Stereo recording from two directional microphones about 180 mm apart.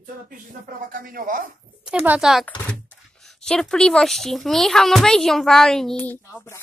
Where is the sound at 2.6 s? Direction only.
5° left (ahead or behind).